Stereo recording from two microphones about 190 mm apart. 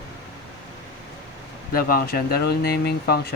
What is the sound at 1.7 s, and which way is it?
Speech, 50° left (ahead or behind).